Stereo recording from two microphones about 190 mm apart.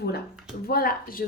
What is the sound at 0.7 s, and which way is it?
Speech, 50° left (ahead or behind).